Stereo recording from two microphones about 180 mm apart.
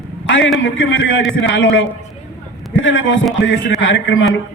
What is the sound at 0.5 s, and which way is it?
A man's voice, 90° left.